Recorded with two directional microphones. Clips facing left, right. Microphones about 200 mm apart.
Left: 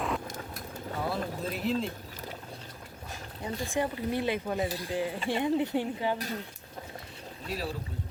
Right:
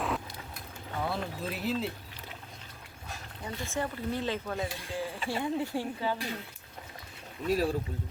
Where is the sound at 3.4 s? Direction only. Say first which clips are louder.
Left 4 dB; 15° left (ahead or behind).